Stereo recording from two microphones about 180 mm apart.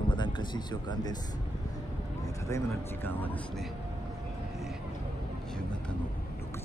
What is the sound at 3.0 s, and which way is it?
Speech, 10° left (ahead or behind).